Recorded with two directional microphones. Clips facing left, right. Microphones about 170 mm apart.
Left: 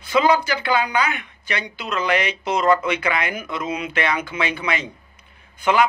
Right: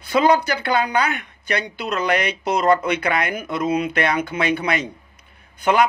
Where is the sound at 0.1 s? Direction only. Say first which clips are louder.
Right 1 dB; 40° right (ahead or behind).